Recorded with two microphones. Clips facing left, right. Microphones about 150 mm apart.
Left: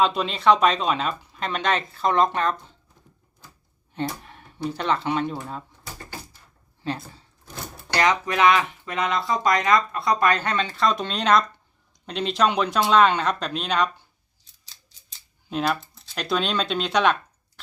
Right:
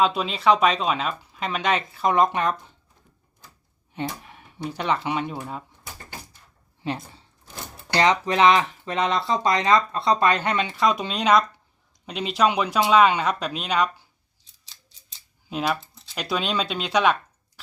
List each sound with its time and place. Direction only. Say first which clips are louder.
0.0 s speech: even; centre (ahead or behind)
3.9 s speech: left 1 dB; 10° right (ahead or behind)
6.8 s speech: even; 20° right (ahead or behind)
15.4 s speech: left 1 dB; 5° right (ahead or behind)